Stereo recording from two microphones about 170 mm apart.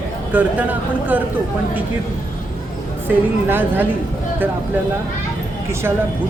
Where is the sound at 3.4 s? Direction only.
10° right (ahead or behind).